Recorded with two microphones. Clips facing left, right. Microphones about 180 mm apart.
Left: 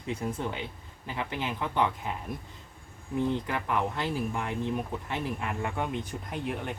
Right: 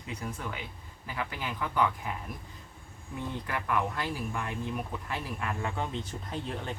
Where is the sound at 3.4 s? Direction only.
25° left (ahead or behind).